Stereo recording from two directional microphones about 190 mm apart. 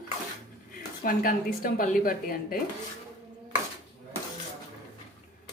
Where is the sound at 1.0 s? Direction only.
45° left (ahead or behind).